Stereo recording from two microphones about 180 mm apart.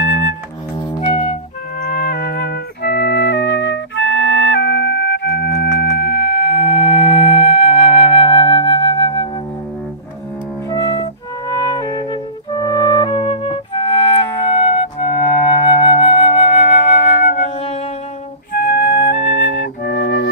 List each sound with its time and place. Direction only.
0.7 s music: 30° left (ahead or behind)
1.9 s music: 55° left (ahead or behind)
6.5 s flute: 35° left (ahead or behind)
10.7 s music: 20° left (ahead or behind)
17.2 s music: 45° left (ahead or behind)
18.5 s flute: 55° left (ahead or behind)
19.9 s flute: 50° left (ahead or behind)